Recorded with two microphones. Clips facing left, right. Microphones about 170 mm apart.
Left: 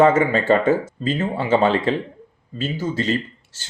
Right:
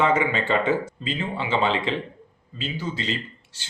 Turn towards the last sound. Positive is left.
turn(degrees=45)  # may be behind; listen again after turning